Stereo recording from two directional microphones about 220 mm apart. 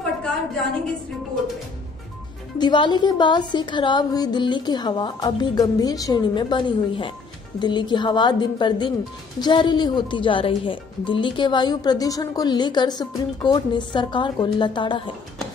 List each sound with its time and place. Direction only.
2.6 s music: 20° left (ahead or behind)